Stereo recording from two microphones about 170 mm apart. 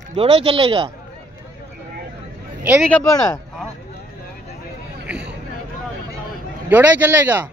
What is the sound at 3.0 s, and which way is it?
Speech, 20° left (ahead or behind).